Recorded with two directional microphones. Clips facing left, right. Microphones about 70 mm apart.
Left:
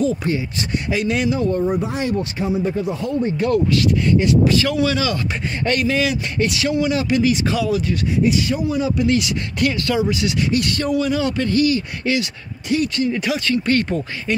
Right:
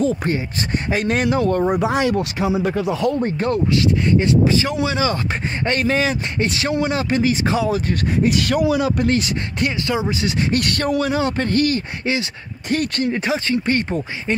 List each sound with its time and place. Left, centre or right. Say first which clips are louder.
0.0 s speech: even; right
1.8 s speech: right 3 dB; right
3.2 s speech: left 2 dB; right
7.9 s speech: even; right
8.9 s speech: left 1 dB; right
9.6 s speech: left 3 dB; right
10.5 s speech: right 1 dB; right
13.1 s speech: even; right